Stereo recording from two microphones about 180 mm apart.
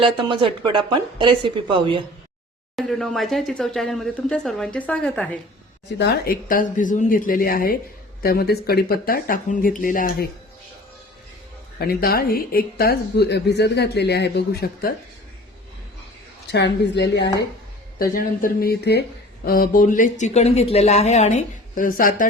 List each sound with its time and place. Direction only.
0.0 s speech: 25° right (ahead or behind)
2.7 s speech: centre (ahead or behind)
6.0 s a woman's voice: 60° left (ahead or behind)
11.8 s a woman's voice: 55° left (ahead or behind)
16.5 s a woman's voice: 70° left (ahead or behind)
18.0 s a woman's voice: 50° left (ahead or behind); by 19.0 s 65° left (ahead or behind)
19.5 s speech: 55° left (ahead or behind)